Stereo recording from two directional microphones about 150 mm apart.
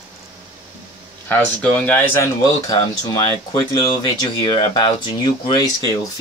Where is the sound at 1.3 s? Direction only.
10° left (ahead or behind); by 6.2 s 25° left (ahead or behind).